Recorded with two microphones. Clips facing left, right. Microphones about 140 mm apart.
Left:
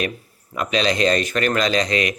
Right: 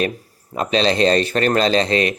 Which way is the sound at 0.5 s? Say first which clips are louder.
Right 3 dB; 30° right (ahead or behind).